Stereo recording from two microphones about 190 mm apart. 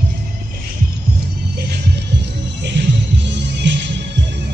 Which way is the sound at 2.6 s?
65° right (ahead or behind).